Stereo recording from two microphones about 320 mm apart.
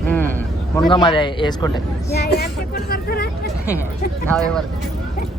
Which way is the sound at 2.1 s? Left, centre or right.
Left.